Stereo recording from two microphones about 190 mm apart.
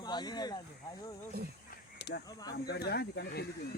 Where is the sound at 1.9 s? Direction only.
65° left (ahead or behind).